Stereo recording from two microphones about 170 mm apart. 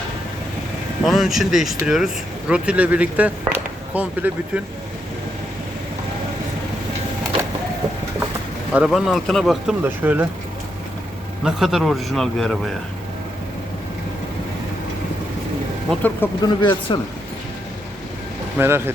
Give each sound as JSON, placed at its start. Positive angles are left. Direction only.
{"t": 1.0, "sound": "speech", "side_deg": 0}
{"t": 8.7, "sound": "speech", "side_deg": -5}
{"t": 11.4, "sound": "speech", "side_deg": 0}
{"t": 15.9, "sound": "speech", "side_deg": 10}
{"t": 16.4, "sound": "speech", "side_deg": 25}
{"t": 18.6, "sound": "speech", "side_deg": -10}